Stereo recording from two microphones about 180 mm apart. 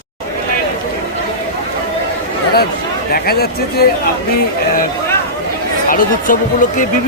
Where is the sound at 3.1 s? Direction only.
60° left (ahead or behind).